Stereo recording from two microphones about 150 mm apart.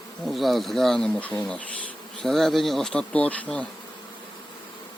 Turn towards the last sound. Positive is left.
turn(degrees=10)  # may be behind; listen again after turning